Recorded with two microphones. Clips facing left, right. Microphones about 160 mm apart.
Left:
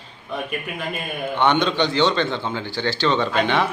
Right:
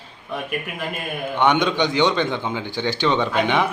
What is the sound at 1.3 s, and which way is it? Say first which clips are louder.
A man's voice: right 1 dB; 10° right (ahead or behind).